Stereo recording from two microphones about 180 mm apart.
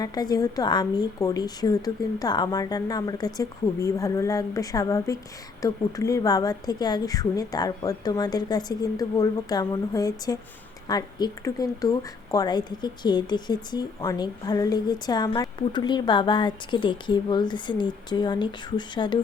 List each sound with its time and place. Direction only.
0.0 s speech: 20° left (ahead or behind)